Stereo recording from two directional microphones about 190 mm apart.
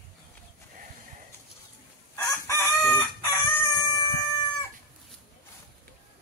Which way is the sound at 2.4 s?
15° left (ahead or behind).